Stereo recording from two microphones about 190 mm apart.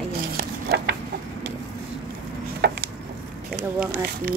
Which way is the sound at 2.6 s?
60° right (ahead or behind).